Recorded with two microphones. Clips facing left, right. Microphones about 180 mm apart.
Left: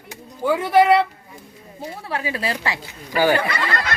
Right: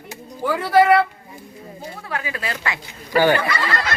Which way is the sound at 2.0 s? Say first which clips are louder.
Left 3 dB; 30° left (ahead or behind).